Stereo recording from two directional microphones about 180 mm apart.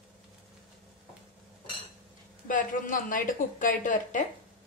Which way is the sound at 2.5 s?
50° left (ahead or behind).